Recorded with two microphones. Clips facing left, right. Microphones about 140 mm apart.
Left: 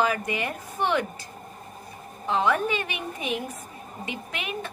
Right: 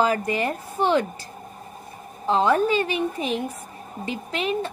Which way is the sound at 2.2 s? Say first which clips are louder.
Right 4 dB; 35° right (ahead or behind).